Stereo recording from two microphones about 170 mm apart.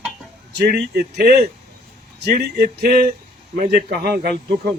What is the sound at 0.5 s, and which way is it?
Speech, 65° right (ahead or behind).